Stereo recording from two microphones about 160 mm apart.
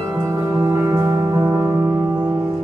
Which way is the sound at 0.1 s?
20° right (ahead or behind).